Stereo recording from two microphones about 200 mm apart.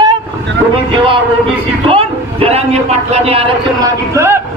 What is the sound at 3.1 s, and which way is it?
Speech, 30° right (ahead or behind).